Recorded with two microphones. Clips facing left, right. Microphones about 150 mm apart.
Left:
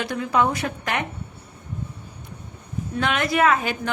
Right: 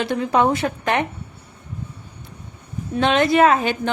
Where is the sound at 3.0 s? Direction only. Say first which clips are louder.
Right 5 dB; 25° right (ahead or behind).